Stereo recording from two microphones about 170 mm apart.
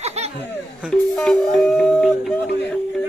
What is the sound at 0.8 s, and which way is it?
A man's voice, 5° left (ahead or behind).